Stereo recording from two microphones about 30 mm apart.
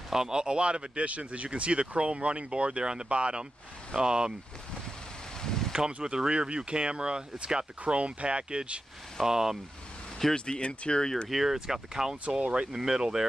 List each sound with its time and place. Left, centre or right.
0.1 s speech: right
3.1 s speech: right
3.9 s speech: right
5.4 s a sound: centre
6.0 s speech: right
7.8 s speech: right
9.2 s speech: centre
10.3 s speech: left
11.2 s speech: centre
11.6 s speech: centre